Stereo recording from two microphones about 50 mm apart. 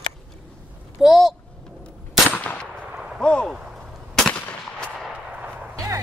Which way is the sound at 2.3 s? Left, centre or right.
Left.